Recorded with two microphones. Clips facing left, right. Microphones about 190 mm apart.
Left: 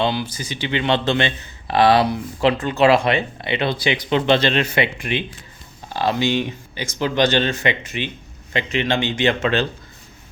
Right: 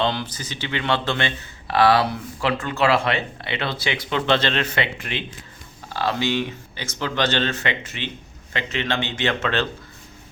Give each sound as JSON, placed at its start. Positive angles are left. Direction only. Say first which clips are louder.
{"t": 0.0, "sound": "speech", "louder": "left 2 dB", "side_deg": 10}